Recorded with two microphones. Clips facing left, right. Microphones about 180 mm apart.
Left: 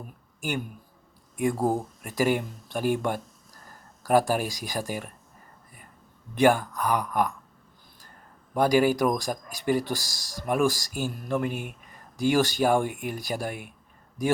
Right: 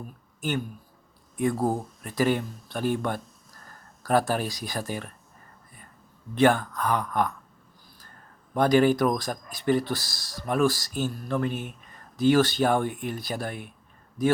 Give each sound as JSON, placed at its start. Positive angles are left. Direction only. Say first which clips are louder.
{"t": 1.4, "sound": "speech", "louder": "even", "side_deg": 10}
{"t": 6.3, "sound": "speech", "louder": "even", "side_deg": 10}
{"t": 8.5, "sound": "speech", "louder": "right 1 dB", "side_deg": 10}